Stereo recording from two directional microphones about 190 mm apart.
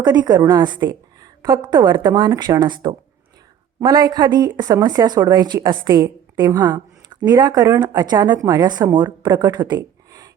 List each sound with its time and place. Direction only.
0.0 s a woman's voice: 20° right (ahead or behind)